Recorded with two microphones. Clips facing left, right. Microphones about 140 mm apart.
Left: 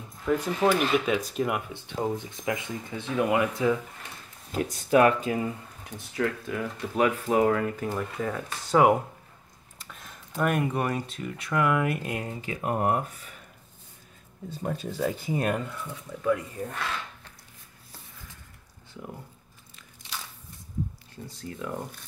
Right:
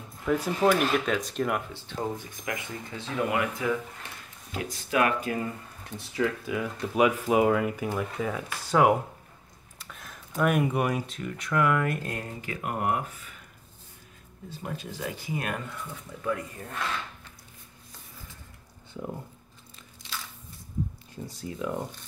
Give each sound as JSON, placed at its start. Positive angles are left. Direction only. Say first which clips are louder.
{"t": 0.2, "sound": "speech", "louder": "even", "side_deg": 0}
{"t": 1.7, "sound": "speech", "louder": "left 3 dB", "side_deg": 20}
{"t": 4.5, "sound": "speech", "louder": "left 7 dB", "side_deg": 40}
{"t": 5.2, "sound": "speech", "louder": "left 2 dB", "side_deg": 20}
{"t": 5.9, "sound": "speech", "louder": "right 1 dB", "side_deg": 0}
{"t": 9.8, "sound": "computer keyboard", "louder": "right 1 dB", "side_deg": 0}
{"t": 10.6, "sound": "speech", "louder": "right 1 dB", "side_deg": -10}
{"t": 11.1, "sound": "speech", "louder": "even", "side_deg": 0}
{"t": 12.3, "sound": "speech", "louder": "left 4 dB", "side_deg": 25}
{"t": 14.6, "sound": "speech", "louder": "left 6 dB", "side_deg": 40}
{"t": 16.6, "sound": "speech", "louder": "left 7 dB", "side_deg": 15}
{"t": 21.4, "sound": "speech", "louder": "right 2 dB", "side_deg": -15}